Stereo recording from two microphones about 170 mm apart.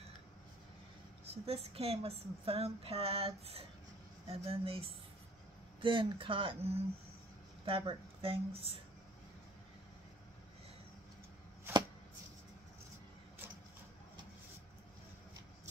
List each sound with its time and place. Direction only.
1.2 s a woman's voice: 35° right (ahead or behind)